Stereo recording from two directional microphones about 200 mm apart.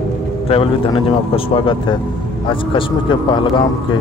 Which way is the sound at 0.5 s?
25° left (ahead or behind).